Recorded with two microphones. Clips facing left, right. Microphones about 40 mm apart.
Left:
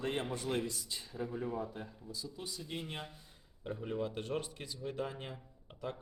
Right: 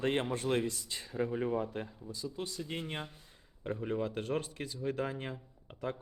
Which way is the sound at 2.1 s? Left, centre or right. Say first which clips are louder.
Right 5 dB; right.